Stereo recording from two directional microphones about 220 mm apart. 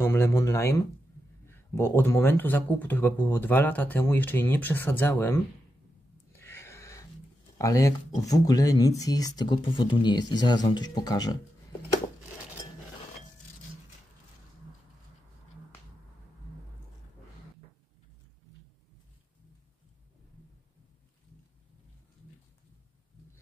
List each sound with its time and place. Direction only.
0.0 s speech: 10° left (ahead or behind)
6.3 s a sound: 10° left (ahead or behind)
7.5 s speech: 15° left (ahead or behind)